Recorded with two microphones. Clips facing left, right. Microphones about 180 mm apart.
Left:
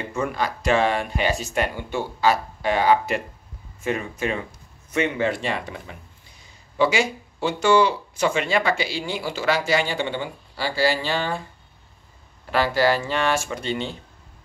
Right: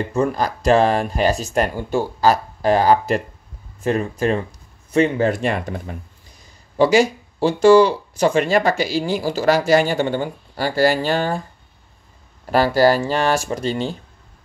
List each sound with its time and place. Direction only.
0.1 s speech: 35° right (ahead or behind)
6.8 s speech: 40° right (ahead or behind)
12.4 s speech: 40° right (ahead or behind)